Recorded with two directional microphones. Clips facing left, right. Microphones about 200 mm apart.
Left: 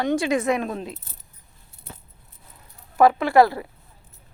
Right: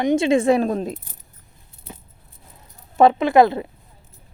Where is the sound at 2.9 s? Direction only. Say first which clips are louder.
Right 2 dB; 25° right (ahead or behind).